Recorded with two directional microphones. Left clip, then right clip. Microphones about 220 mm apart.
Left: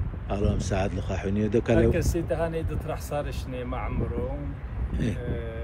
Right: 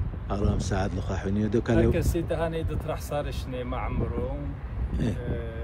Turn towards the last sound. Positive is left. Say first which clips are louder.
# even
turn(degrees=-5)  # may be behind; listen again after turning